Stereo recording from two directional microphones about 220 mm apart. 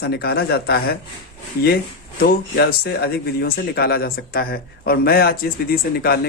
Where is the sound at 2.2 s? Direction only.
45° left (ahead or behind).